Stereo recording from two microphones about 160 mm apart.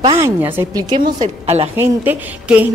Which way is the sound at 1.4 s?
40° right (ahead or behind).